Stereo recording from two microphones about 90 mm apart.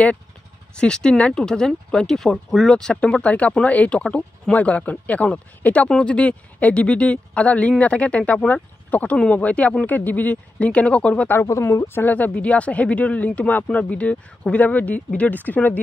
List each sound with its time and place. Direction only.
0.7 s speech: 10° left (ahead or behind)
11.3 s speech: 30° left (ahead or behind)